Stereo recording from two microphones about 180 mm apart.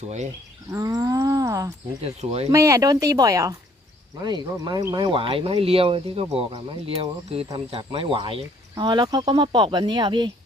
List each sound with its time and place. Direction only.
0.7 s wild animals: 20° right (ahead or behind)
2.0 s speech: 35° right (ahead or behind)
2.5 s speech: 15° right (ahead or behind)